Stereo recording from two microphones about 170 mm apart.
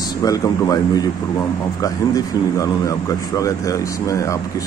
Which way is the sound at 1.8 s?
20° left (ahead or behind).